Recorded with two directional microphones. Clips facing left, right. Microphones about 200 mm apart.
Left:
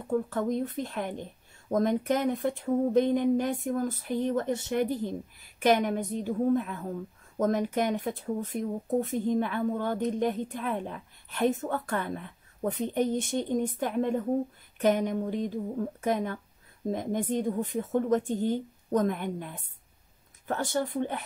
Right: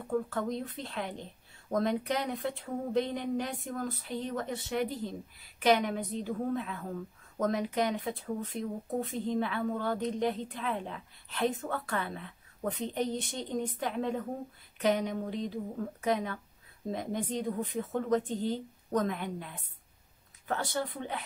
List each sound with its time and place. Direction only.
0.5 s speech: 45° left (ahead or behind)